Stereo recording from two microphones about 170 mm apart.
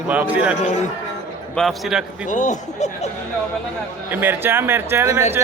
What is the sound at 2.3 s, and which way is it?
Speech, 45° left (ahead or behind).